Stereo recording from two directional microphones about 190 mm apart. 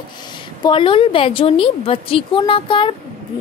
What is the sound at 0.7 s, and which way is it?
A woman's voice, 25° left (ahead or behind).